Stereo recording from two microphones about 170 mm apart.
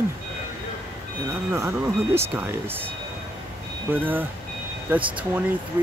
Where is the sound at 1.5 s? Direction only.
15° right (ahead or behind).